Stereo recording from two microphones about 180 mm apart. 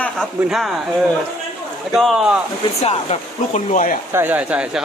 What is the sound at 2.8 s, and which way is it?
Speech, 40° left (ahead or behind).